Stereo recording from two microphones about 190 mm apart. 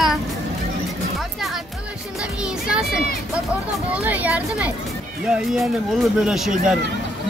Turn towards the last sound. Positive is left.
turn(degrees=0)  # may be behind; listen again after turning